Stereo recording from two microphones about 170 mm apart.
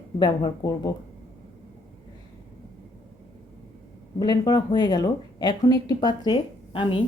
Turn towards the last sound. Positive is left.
turn(degrees=30)  # may be behind; listen again after turning